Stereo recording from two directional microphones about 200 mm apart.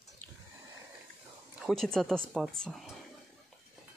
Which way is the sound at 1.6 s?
Centre (ahead or behind).